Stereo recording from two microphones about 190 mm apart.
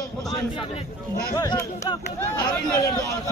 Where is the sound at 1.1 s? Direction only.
20° left (ahead or behind).